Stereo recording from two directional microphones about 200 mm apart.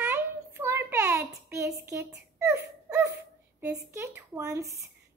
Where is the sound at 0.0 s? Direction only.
10° right (ahead or behind).